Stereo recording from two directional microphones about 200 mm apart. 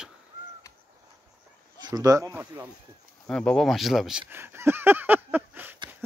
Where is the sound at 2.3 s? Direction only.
10° right (ahead or behind).